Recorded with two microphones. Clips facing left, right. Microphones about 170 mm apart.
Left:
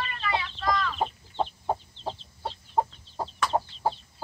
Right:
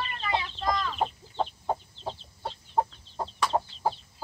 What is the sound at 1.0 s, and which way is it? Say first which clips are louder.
Chicken: even; centre (ahead or behind).